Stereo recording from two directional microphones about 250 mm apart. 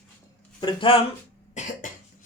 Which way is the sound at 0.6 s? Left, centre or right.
Left.